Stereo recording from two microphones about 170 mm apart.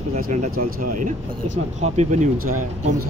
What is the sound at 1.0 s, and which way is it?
Speech, 45° right (ahead or behind).